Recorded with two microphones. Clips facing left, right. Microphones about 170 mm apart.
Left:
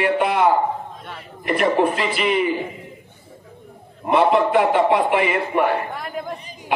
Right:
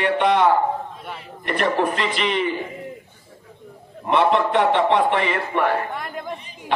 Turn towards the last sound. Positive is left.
turn(degrees=5)  # may be behind; listen again after turning